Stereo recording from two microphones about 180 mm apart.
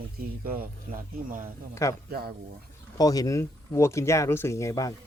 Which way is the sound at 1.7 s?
15° left (ahead or behind).